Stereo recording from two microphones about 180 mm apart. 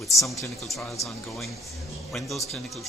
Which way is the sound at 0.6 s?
Centre (ahead or behind).